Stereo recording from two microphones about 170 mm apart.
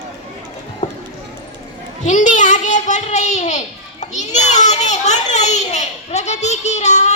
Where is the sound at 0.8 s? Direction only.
45° left (ahead or behind).